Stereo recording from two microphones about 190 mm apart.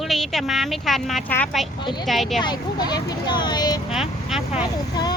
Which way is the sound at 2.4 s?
20° left (ahead or behind).